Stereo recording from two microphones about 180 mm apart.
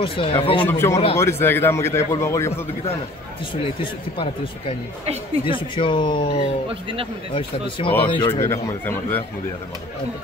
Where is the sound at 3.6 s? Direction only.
30° left (ahead or behind).